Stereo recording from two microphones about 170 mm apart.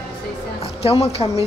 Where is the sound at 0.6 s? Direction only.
35° left (ahead or behind).